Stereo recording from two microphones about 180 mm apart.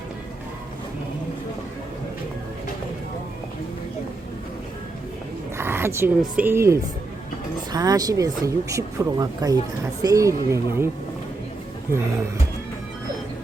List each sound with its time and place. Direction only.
5.5 s speech: 15° right (ahead or behind)